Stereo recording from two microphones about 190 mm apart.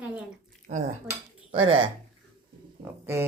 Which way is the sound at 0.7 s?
40° right (ahead or behind).